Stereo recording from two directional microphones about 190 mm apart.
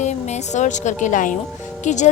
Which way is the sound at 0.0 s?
35° left (ahead or behind).